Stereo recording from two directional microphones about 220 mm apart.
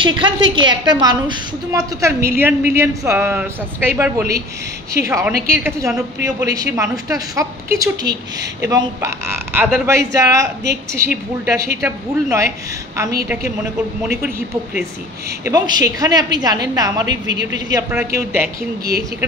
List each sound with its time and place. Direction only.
0.0 s a woman's voice: 20° right (ahead or behind)
14.0 s a man's voice: 5° right (ahead or behind)
15.4 s a woman's voice: 20° right (ahead or behind)